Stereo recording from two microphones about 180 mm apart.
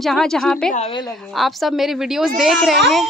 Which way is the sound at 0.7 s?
30° left (ahead or behind).